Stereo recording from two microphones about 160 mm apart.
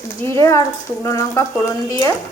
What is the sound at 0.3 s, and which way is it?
Speech, 20° left (ahead or behind).